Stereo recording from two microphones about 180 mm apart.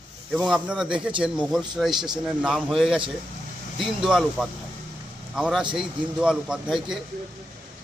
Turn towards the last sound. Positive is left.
turn(degrees=0)  # may be behind; listen again after turning